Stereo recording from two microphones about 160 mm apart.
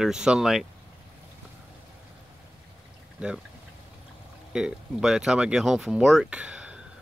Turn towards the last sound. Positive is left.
turn(degrees=-5)  # may be behind; listen again after turning